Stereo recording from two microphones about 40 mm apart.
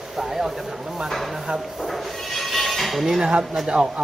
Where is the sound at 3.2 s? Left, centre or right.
Right.